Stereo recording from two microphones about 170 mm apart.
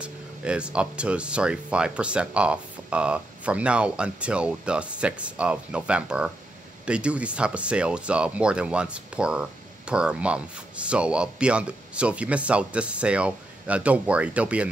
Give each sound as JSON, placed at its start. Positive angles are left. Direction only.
{"t": 0.0, "sound": "speech", "side_deg": -5}